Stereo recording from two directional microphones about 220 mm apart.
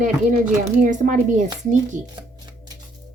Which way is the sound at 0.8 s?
35° right (ahead or behind).